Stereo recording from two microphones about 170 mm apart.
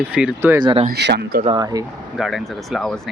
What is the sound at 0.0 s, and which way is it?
Speech, 5° right (ahead or behind).